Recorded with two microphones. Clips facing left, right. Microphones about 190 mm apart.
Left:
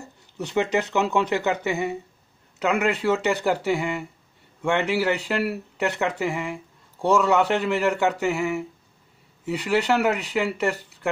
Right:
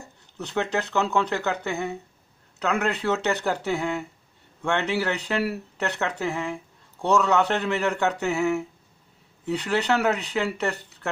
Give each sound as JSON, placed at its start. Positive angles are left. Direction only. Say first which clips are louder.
{"t": 0.4, "sound": "speech", "louder": "left 3 dB", "side_deg": 15}